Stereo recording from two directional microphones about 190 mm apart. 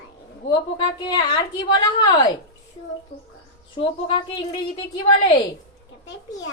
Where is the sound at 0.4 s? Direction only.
25° left (ahead or behind).